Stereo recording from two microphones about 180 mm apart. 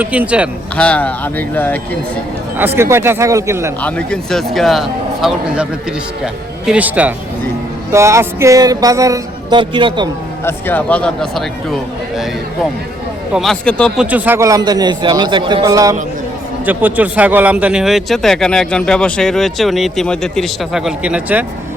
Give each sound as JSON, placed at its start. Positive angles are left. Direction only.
{"t": 0.0, "sound": "speech", "side_deg": -10}
{"t": 0.8, "sound": "speech", "side_deg": 5}
{"t": 2.6, "sound": "speech", "side_deg": -10}
{"t": 3.8, "sound": "speech", "side_deg": 5}
{"t": 7.9, "sound": "music", "side_deg": -15}
{"t": 10.4, "sound": "speech", "side_deg": 10}
{"t": 13.3, "sound": "speech", "side_deg": 0}
{"t": 14.0, "sound": "music", "side_deg": -10}
{"t": 16.6, "sound": "speech", "side_deg": -10}